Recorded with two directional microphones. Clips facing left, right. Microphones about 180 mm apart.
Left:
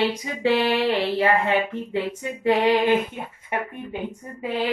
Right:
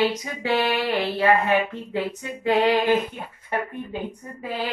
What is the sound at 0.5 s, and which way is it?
A woman's voice, 25° left (ahead or behind).